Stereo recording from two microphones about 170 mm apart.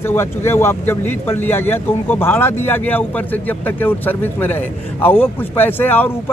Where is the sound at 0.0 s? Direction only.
15° left (ahead or behind).